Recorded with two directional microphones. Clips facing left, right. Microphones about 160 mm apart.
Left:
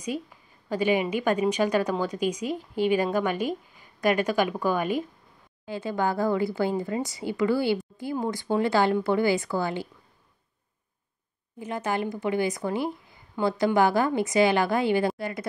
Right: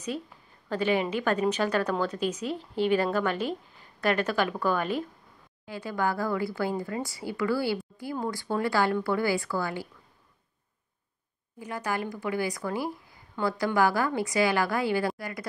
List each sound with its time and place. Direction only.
0.7 s speech: 10° left (ahead or behind)
5.7 s a woman's voice: 25° left (ahead or behind)
11.6 s a woman's voice: 20° left (ahead or behind)